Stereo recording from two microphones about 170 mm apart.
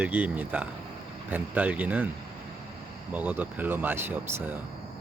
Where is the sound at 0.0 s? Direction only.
10° right (ahead or behind).